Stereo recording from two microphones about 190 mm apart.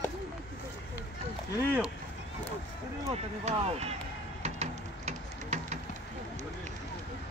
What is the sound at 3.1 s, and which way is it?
Speech, 35° right (ahead or behind).